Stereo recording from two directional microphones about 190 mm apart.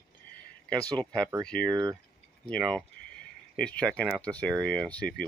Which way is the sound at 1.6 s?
20° right (ahead or behind).